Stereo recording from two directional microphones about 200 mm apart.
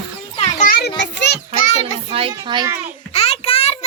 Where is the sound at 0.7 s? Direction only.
55° left (ahead or behind).